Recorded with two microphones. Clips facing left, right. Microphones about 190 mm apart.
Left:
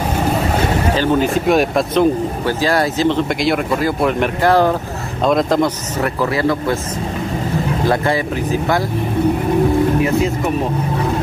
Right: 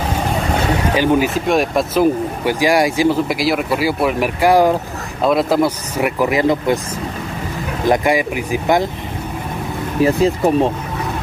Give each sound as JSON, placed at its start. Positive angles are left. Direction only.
{"t": 0.9, "sound": "speech", "side_deg": -10}
{"t": 2.4, "sound": "speech", "side_deg": -15}
{"t": 7.9, "sound": "speech", "side_deg": -15}
{"t": 10.0, "sound": "speech", "side_deg": -35}